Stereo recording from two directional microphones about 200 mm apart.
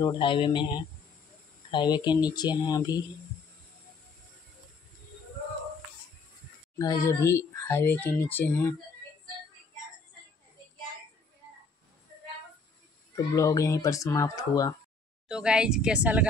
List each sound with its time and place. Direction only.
0.0 s speech: 25° left (ahead or behind)
6.8 s speech: 15° left (ahead or behind)
13.1 s speech: 15° left (ahead or behind)
15.2 s a woman's voice: 5° right (ahead or behind)